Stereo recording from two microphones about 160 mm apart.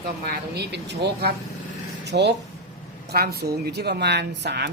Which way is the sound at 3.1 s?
80° right.